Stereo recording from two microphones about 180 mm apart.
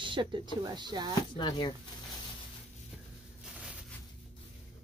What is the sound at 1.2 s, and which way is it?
Speech, 25° left (ahead or behind).